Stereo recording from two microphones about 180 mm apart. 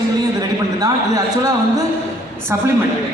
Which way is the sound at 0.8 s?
20° right (ahead or behind).